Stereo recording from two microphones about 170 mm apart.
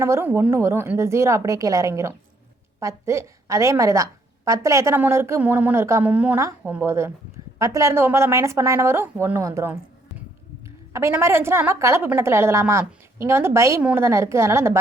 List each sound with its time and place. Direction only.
0.0 s a woman's voice: 15° right (ahead or behind)
10.9 s a woman's voice: 15° right (ahead or behind)